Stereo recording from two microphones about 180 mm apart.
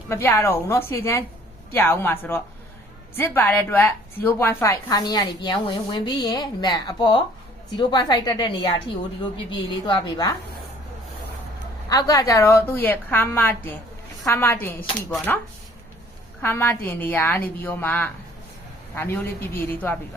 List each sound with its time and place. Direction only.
0.1 s a woman's voice: 10° left (ahead or behind)
11.9 s a woman's voice: 20° left (ahead or behind)